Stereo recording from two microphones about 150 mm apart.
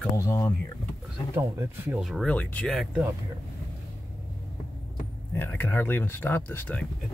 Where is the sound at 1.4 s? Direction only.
15° right (ahead or behind).